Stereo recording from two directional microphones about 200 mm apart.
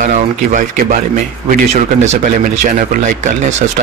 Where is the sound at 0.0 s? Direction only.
40° right (ahead or behind).